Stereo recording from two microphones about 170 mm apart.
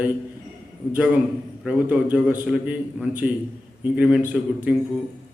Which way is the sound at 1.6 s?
5° right (ahead or behind).